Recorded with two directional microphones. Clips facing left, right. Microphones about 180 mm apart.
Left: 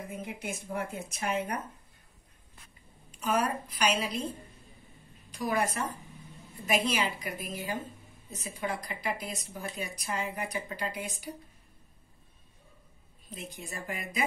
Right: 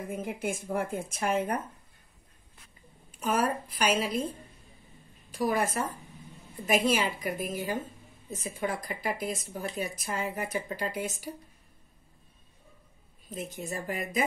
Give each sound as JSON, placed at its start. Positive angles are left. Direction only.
{"t": 0.0, "sound": "speech", "side_deg": -50}
{"t": 3.2, "sound": "speech", "side_deg": -50}
{"t": 5.4, "sound": "speech", "side_deg": -50}
{"t": 13.3, "sound": "speech", "side_deg": -45}